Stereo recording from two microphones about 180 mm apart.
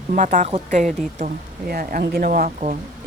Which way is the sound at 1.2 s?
55° right (ahead or behind).